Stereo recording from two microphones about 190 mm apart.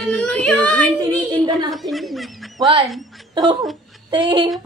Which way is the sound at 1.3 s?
20° right (ahead or behind).